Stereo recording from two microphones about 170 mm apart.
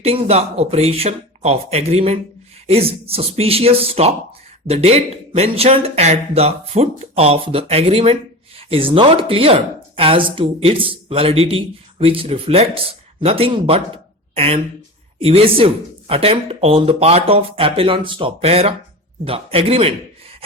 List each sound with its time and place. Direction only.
0.0 s speech: 35° right (ahead or behind)